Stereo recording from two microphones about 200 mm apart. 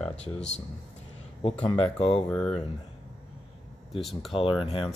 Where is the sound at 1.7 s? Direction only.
25° left (ahead or behind).